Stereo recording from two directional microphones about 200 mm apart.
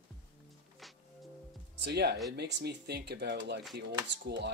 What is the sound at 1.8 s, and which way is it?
Speech, 55° right (ahead or behind).